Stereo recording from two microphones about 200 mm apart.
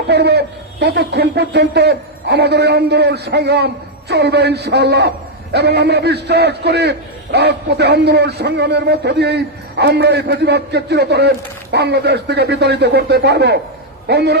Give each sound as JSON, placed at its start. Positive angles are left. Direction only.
{"t": 0.1, "sound": "a man's voice", "side_deg": -55}